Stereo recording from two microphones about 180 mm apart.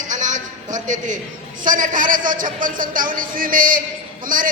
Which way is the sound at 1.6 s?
45° right (ahead or behind).